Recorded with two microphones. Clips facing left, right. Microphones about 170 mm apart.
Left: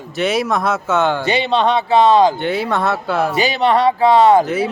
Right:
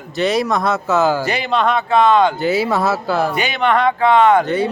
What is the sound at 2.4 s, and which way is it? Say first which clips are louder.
Speech: right 2 dB; 5° right (ahead or behind).